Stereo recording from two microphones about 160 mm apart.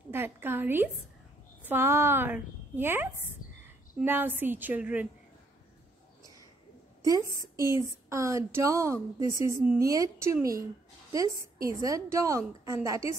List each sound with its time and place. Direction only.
0.1 s a woman's voice: 15° right (ahead or behind)
7.0 s a woman's voice: 20° right (ahead or behind)